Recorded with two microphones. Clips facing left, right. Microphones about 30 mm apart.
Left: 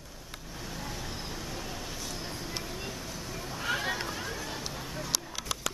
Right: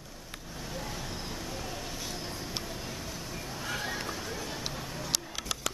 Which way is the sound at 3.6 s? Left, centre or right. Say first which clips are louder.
Left 4 dB; centre.